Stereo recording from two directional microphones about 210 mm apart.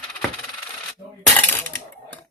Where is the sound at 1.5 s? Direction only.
10° left (ahead or behind).